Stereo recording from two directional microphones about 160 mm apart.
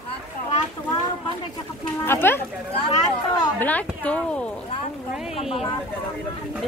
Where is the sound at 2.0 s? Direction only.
15° left (ahead or behind).